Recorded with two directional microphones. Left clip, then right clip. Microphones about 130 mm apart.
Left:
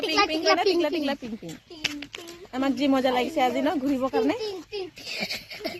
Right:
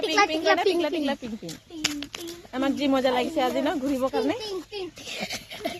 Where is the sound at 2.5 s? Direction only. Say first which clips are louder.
Even; 35° left (ahead or behind).